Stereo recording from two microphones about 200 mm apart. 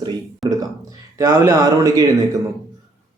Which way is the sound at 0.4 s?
Centre (ahead or behind).